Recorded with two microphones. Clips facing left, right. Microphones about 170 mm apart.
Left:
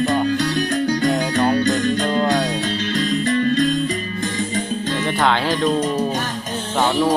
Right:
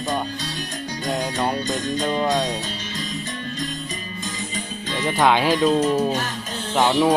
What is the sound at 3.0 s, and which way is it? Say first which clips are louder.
Music: left 14 dB; 75° left (ahead or behind).